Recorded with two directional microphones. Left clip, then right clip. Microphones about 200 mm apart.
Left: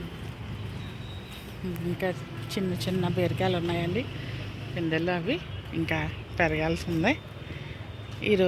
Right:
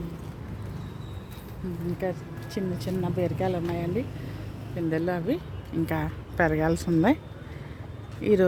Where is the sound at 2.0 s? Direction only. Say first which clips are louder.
Even; 15° right (ahead or behind).